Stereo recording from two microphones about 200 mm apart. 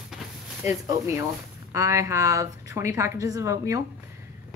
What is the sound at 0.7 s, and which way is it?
Speech, 15° right (ahead or behind).